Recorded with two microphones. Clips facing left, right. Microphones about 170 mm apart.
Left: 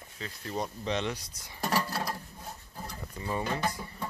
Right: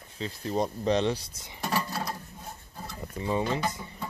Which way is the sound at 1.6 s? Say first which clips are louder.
Even; centre (ahead or behind).